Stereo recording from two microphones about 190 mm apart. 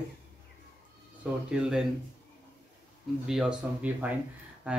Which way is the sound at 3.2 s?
5° right (ahead or behind).